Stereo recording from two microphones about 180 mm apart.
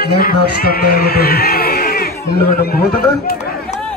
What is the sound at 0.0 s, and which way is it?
Speech, 60° left (ahead or behind).